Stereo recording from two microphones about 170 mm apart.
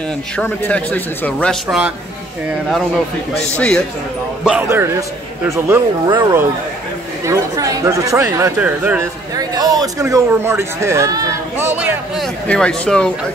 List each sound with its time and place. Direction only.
0.4 s speech: 10° left (ahead or behind)
3.3 s speech: 5° left (ahead or behind)
4.5 s a man's voice: 10° right (ahead or behind)
9.3 s speech: 20° right (ahead or behind)
12.4 s speech: 5° left (ahead or behind)